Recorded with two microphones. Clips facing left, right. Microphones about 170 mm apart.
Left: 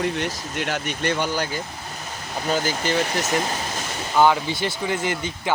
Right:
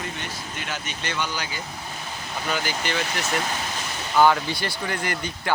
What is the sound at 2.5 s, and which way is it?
Speech, 35° left (ahead or behind).